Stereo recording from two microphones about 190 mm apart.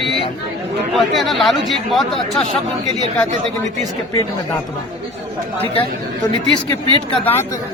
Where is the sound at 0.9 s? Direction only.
Centre (ahead or behind).